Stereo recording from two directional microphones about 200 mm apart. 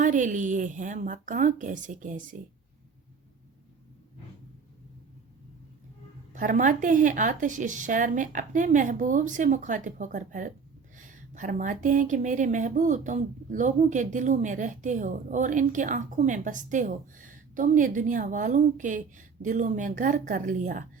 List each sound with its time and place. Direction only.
0.0 s a woman's voice: 40° right (ahead or behind)
6.3 s a woman's voice: 40° right (ahead or behind)